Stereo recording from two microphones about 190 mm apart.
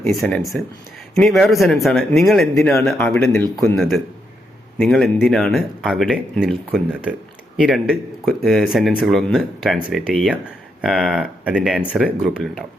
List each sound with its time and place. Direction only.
0.0 s speech: centre (ahead or behind)